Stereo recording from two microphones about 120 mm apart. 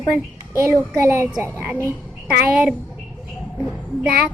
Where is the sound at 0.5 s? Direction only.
20° right (ahead or behind).